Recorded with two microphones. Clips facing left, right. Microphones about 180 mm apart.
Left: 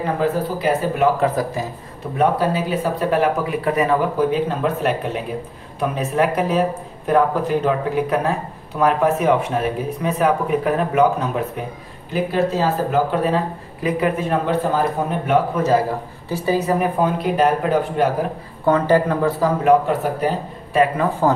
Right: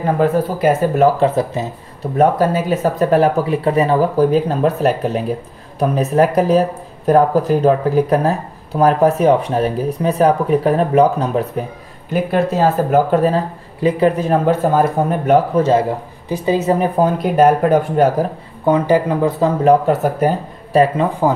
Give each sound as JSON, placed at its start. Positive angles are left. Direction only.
{"t": 0.0, "sound": "speech", "side_deg": -50}
{"t": 1.2, "sound": "a woman's voice", "side_deg": -25}
{"t": 2.1, "sound": "speech", "side_deg": -45}
{"t": 12.1, "sound": "speech", "side_deg": -55}
{"t": 13.7, "sound": "speech", "side_deg": -30}
{"t": 15.5, "sound": "a woman's voice", "side_deg": -30}
{"t": 17.0, "sound": "speech", "side_deg": -45}
{"t": 18.7, "sound": "speech", "side_deg": -15}
{"t": 19.6, "sound": "speech", "side_deg": -45}
{"t": 20.8, "sound": "a woman's voice", "side_deg": -20}